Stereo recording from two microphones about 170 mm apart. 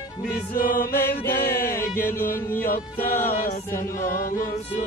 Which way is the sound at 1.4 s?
65° left (ahead or behind).